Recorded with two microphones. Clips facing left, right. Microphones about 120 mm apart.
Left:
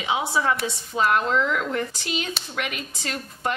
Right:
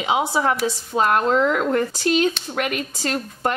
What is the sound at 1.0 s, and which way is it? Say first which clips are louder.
Speech: right 4 dB; 45° right (ahead or behind).